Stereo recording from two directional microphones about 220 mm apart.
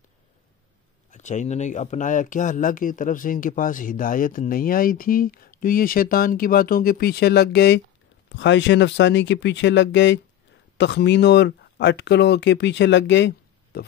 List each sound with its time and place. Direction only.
1.1 s speech: 35° left (ahead or behind); by 13.3 s 55° left (ahead or behind)
13.7 s pig: 50° left (ahead or behind)